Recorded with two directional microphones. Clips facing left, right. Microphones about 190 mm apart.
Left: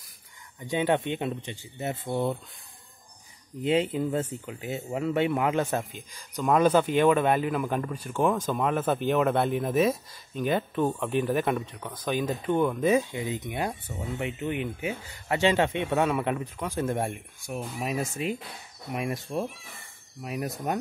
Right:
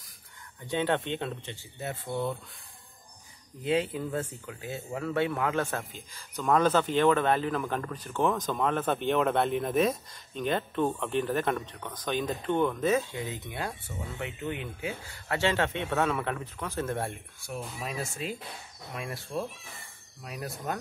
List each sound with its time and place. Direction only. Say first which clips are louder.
0.6 s speech: left 3 dB; 10° left (ahead or behind)
3.6 s speech: left 3 dB; 20° left (ahead or behind)